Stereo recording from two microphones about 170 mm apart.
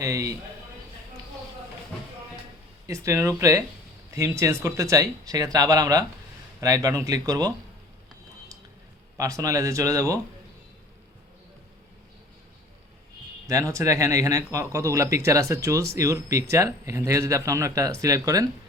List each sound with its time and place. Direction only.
0.0 s speech: 20° right (ahead or behind)
2.8 s speech: 20° right (ahead or behind)
9.1 s speech: 20° right (ahead or behind)
13.5 s speech: 20° right (ahead or behind)